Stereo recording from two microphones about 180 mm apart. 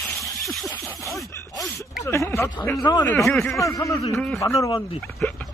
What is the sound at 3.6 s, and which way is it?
Speech, 15° left (ahead or behind).